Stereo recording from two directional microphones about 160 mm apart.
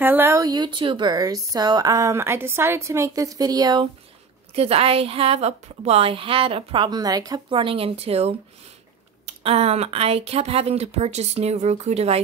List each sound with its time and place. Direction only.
0.0 s speech: 15° right (ahead or behind)
4.6 s a woman's voice: 40° right (ahead or behind)